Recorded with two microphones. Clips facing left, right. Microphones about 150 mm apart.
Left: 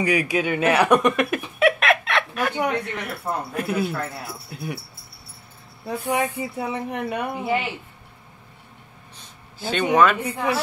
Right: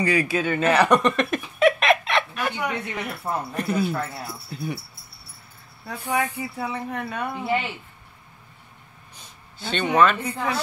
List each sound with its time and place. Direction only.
0.0 s speech: 15° left (ahead or behind)
5.9 s speech: 20° left (ahead or behind)
9.6 s speech: 5° left (ahead or behind)